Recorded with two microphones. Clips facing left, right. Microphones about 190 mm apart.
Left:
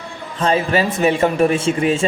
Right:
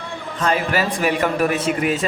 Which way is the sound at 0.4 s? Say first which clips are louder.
Left 3 dB; 25° left (ahead or behind).